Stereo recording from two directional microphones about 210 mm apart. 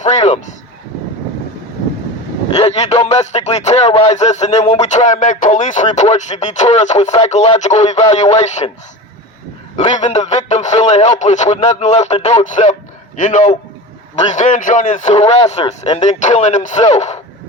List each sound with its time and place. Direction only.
0.0 s a sound: 35° left (ahead or behind)
2.6 s a man's voice: 30° left (ahead or behind)
9.7 s a man's voice: 30° left (ahead or behind)